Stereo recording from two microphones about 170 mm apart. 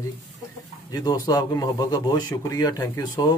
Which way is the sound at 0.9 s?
20° left (ahead or behind).